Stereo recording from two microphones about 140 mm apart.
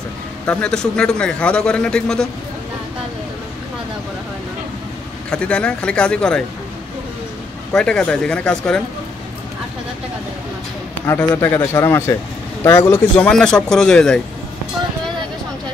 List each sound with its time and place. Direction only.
0.5 s a man's voice: 5° left (ahead or behind)
5.3 s a man's voice: 10° left (ahead or behind)
7.7 s speech: 5° left (ahead or behind)
11.1 s a man's voice: 20° left (ahead or behind)
13.2 s speech: 5° left (ahead or behind)